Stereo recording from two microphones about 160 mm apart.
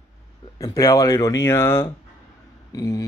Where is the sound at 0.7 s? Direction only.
20° left (ahead or behind).